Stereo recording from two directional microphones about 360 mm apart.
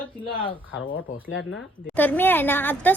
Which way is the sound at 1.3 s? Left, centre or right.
Left.